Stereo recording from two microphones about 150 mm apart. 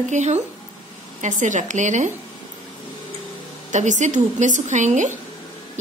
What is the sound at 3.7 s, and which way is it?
A woman's voice, 55° right (ahead or behind).